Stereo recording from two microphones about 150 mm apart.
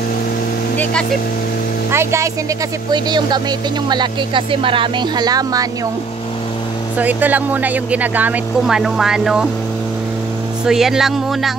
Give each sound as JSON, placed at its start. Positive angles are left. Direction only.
{"t": 1.9, "sound": "speech", "side_deg": -15}
{"t": 2.9, "sound": "speech", "side_deg": -30}
{"t": 7.0, "sound": "speech", "side_deg": -10}
{"t": 10.6, "sound": "music", "side_deg": -5}